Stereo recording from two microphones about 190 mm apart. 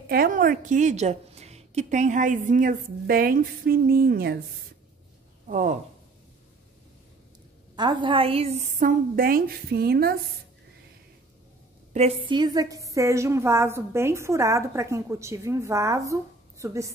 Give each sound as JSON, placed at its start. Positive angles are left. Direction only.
{"t": 0.1, "sound": "a woman's voice", "side_deg": -50}
{"t": 5.5, "sound": "a woman's voice", "side_deg": -40}
{"t": 7.7, "sound": "a woman's voice", "side_deg": -25}
{"t": 11.9, "sound": "a woman's voice", "side_deg": -35}